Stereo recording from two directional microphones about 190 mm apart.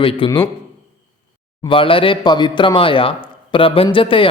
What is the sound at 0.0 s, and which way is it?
Speech, 30° left (ahead or behind).